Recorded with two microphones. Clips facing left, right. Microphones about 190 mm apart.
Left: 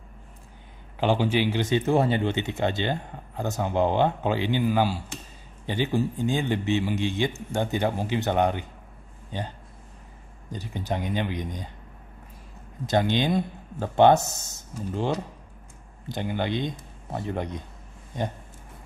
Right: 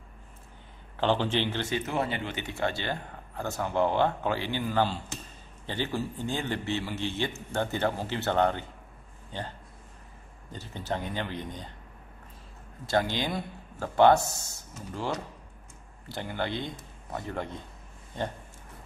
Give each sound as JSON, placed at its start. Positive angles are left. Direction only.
{"t": 0.9, "sound": "a man's voice", "side_deg": 10}
{"t": 1.8, "sound": "a man's voice", "side_deg": 30}
{"t": 10.5, "sound": "a man's voice", "side_deg": 15}
{"t": 12.8, "sound": "speech", "side_deg": 20}
{"t": 16.1, "sound": "a man's voice", "side_deg": 20}